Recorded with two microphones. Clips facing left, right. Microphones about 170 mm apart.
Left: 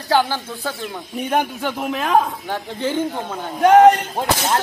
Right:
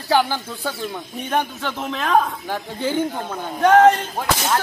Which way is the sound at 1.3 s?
15° left (ahead or behind).